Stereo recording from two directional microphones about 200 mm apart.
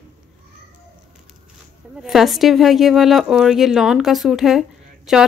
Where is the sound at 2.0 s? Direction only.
Centre (ahead or behind).